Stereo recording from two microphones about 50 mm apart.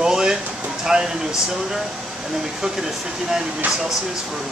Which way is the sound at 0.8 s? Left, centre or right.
Centre.